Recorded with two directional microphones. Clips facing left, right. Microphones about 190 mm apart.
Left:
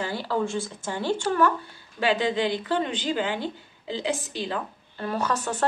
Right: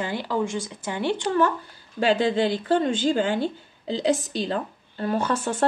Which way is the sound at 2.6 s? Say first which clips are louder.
Right 5 dB; 45° right (ahead or behind).